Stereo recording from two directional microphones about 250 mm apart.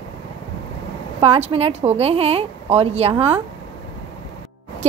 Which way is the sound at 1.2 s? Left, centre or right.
Right.